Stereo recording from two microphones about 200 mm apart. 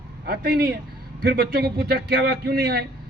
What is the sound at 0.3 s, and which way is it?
Speech, 50° right (ahead or behind).